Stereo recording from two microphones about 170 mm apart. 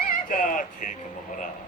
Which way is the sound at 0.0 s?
55° left (ahead or behind).